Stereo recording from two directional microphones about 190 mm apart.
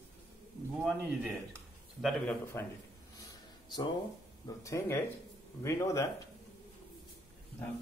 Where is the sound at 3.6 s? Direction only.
20° left (ahead or behind).